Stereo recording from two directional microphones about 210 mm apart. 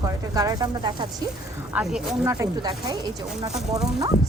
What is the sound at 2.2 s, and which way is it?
Speech, 15° right (ahead or behind).